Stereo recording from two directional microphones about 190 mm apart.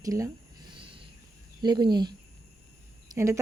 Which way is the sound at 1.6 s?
20° right (ahead or behind).